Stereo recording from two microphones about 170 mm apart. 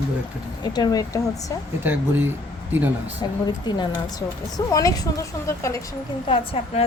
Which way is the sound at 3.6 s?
25° left (ahead or behind).